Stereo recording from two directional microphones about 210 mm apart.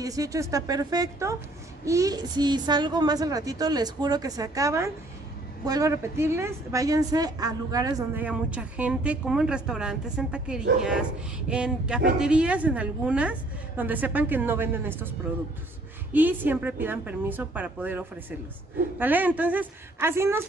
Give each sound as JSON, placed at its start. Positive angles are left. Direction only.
{"t": 0.0, "sound": "a woman's voice", "side_deg": -15}